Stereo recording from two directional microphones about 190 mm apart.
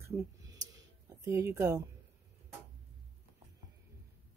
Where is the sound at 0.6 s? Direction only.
15° right (ahead or behind).